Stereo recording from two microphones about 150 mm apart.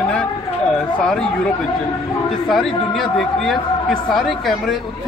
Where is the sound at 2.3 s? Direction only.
Centre (ahead or behind).